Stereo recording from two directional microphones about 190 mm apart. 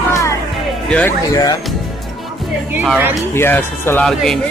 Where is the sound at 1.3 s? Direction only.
20° left (ahead or behind).